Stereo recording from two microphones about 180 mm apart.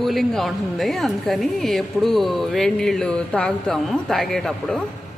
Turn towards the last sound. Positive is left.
turn(degrees=5)  # may be behind; listen again after turning